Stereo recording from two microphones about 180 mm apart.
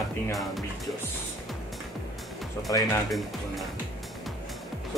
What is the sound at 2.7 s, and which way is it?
Speech, 20° left (ahead or behind).